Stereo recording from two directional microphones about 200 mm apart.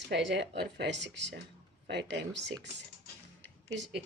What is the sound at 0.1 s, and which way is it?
A woman's voice, 60° right (ahead or behind).